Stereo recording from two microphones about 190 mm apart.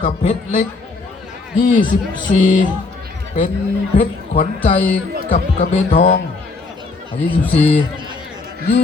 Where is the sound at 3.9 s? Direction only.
30° left (ahead or behind).